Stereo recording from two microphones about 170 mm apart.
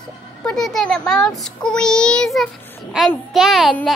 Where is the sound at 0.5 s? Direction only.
Centre (ahead or behind).